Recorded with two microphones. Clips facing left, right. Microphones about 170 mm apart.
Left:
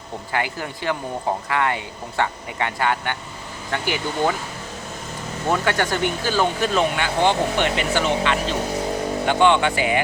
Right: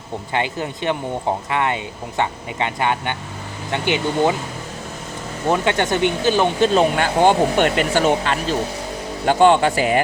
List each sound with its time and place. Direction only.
0.3 s speech: 20° right (ahead or behind)
5.5 s speech: 20° right (ahead or behind)
6.7 s speech: 45° right (ahead or behind)